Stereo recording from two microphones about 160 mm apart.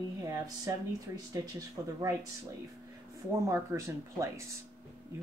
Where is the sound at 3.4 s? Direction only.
20° right (ahead or behind).